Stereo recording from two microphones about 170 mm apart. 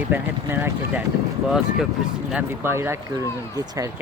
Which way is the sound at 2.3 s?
15° right (ahead or behind).